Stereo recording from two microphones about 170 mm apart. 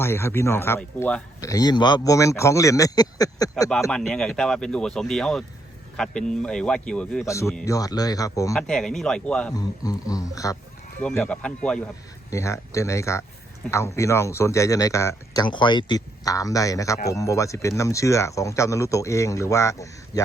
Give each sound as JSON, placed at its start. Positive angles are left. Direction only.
{"t": 0.0, "sound": "speech", "side_deg": 15}
{"t": 3.9, "sound": "speech", "side_deg": 5}
{"t": 7.3, "sound": "speech", "side_deg": 15}
{"t": 8.5, "sound": "speech", "side_deg": 5}
{"t": 9.5, "sound": "speech", "side_deg": 20}
{"t": 12.3, "sound": "speech", "side_deg": 15}